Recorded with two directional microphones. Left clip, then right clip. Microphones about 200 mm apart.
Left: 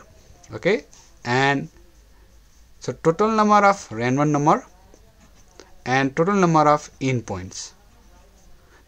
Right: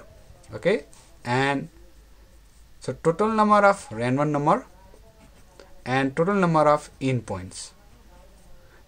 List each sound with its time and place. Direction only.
0.5 s speech: 25° left (ahead or behind)
2.8 s speech: 25° left (ahead or behind)